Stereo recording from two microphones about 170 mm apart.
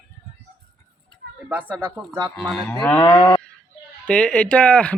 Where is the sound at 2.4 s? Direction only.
Centre (ahead or behind).